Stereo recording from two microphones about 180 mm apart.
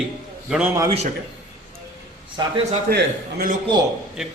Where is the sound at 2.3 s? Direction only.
30° right (ahead or behind).